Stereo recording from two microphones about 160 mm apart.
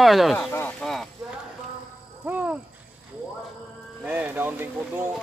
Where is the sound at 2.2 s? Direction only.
10° right (ahead or behind).